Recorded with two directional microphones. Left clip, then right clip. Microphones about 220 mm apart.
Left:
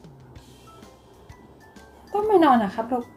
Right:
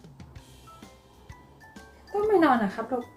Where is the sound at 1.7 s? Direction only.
Centre (ahead or behind).